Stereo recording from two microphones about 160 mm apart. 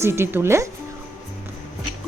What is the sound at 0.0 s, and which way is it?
Speech, 15° right (ahead or behind).